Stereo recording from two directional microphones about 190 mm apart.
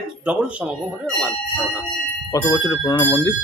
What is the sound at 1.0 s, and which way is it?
Speech, 5° left (ahead or behind).